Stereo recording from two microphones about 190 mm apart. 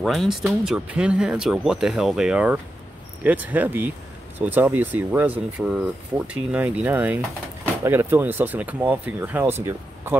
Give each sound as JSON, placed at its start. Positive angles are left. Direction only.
{"t": 0.0, "sound": "speech", "side_deg": 0}